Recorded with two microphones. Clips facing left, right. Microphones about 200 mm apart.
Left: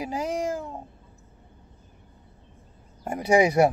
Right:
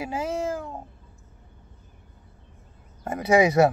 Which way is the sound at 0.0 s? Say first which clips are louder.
Even; 15° left (ahead or behind).